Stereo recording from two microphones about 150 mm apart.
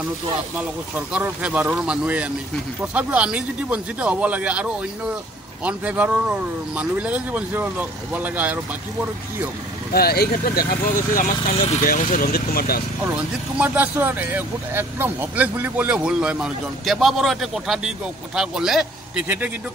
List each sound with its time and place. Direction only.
0.6 s speech: 10° right (ahead or behind)
9.9 s speech: 90° left
11.8 s speech: 65° left (ahead or behind); by 12.8 s 90° left
13.1 s speech: 10° right (ahead or behind)
19.2 s speech: 15° right (ahead or behind)